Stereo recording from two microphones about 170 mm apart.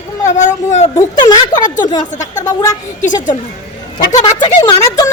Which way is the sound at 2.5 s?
20° left (ahead or behind).